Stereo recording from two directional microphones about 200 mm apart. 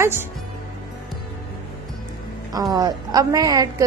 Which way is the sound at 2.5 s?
20° right (ahead or behind).